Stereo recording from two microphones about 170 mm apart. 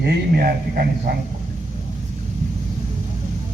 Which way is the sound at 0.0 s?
70° right (ahead or behind).